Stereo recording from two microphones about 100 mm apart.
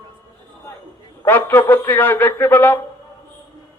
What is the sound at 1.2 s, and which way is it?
A man's voice, 20° left (ahead or behind).